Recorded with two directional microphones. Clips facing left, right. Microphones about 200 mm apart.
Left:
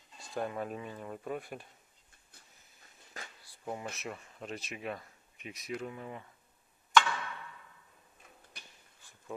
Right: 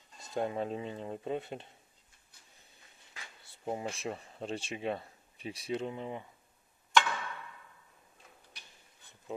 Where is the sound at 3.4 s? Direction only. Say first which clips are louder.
Right 4 dB; 25° right (ahead or behind).